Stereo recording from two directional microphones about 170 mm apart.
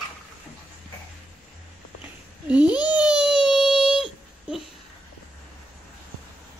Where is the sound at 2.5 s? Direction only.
5° right (ahead or behind).